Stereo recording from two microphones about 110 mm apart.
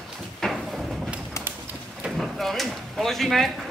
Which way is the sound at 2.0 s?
Centre (ahead or behind).